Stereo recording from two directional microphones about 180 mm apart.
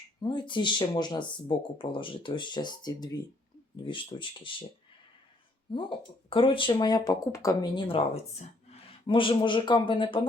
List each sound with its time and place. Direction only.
0.2 s speech: 25° left (ahead or behind)
6.3 s speech: 30° left (ahead or behind)